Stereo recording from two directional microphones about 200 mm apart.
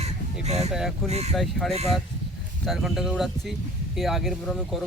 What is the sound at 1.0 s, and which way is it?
Speech, 35° right (ahead or behind).